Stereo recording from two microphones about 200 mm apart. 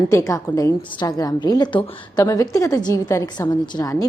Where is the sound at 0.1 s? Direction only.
15° left (ahead or behind).